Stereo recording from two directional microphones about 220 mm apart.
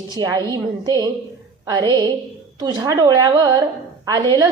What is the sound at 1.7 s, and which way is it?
A woman's voice, 20° right (ahead or behind).